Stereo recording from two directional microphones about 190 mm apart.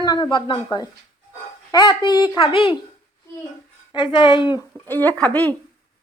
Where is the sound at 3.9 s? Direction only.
25° left (ahead or behind).